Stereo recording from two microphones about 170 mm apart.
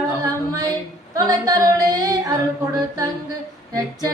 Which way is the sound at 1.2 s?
20° right (ahead or behind).